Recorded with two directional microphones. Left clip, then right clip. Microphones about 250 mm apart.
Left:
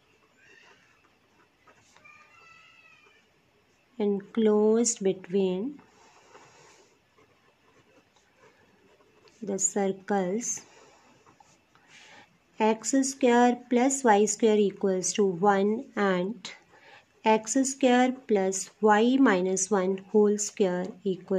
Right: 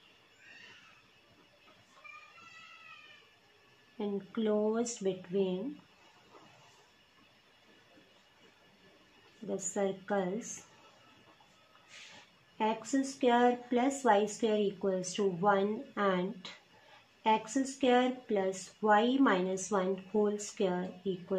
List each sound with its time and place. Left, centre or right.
4.0 s speech: left
9.5 s speech: left
12.5 s speech: left